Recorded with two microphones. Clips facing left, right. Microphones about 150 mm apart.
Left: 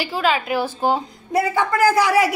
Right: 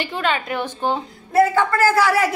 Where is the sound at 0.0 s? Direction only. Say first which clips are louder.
Left 2 dB; 5° left (ahead or behind).